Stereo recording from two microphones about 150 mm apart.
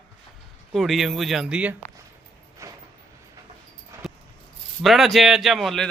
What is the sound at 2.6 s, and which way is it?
Vehicle, 20° right (ahead or behind).